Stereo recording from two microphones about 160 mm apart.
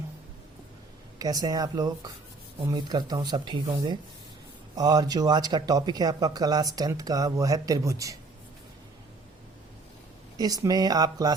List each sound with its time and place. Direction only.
1.2 s speech: 25° right (ahead or behind)
10.3 s speech: 25° right (ahead or behind)